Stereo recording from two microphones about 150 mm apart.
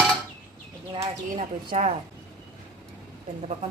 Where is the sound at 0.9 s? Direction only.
40° right (ahead or behind).